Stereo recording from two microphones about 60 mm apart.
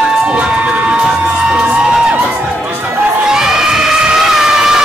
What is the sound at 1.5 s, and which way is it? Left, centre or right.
Music, centre.